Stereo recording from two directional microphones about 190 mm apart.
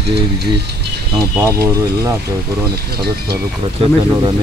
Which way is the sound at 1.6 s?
20° right (ahead or behind).